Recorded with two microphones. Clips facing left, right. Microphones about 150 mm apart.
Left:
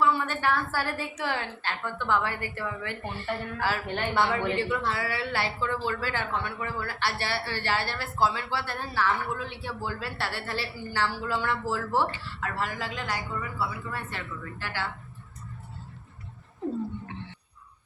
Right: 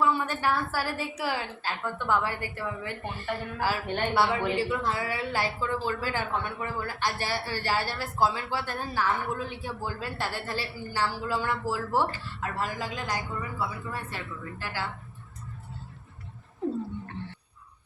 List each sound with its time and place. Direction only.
0.0 s a woman's voice: 15° right (ahead or behind)